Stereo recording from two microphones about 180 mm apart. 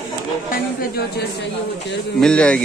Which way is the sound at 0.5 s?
60° left (ahead or behind).